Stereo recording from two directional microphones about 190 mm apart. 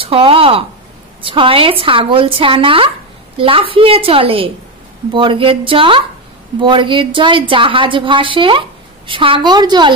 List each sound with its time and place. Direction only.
0.0 s a woman's voice: 30° right (ahead or behind)